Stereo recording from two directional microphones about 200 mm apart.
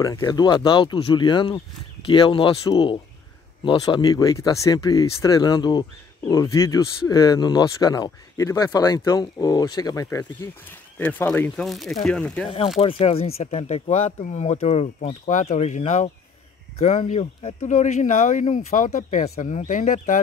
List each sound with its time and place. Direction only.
0.0 s speech: 20° left (ahead or behind)
12.4 s speech: 30° left (ahead or behind)